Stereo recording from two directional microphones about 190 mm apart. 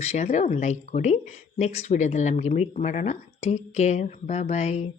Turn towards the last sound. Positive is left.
turn(degrees=35)  # may be behind; listen again after turning